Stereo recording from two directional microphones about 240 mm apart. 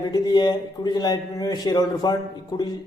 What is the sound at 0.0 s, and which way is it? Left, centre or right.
Speech, centre.